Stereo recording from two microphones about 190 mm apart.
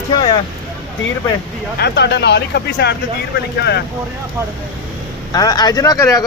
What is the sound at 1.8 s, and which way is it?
Speech, 65° left (ahead or behind).